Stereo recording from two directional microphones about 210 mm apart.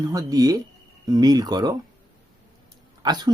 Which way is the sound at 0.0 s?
15° right (ahead or behind).